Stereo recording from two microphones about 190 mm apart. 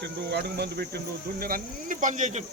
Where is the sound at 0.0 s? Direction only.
60° right (ahead or behind).